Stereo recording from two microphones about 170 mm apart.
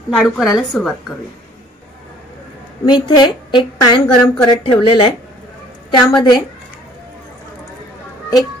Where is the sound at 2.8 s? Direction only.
25° left (ahead or behind).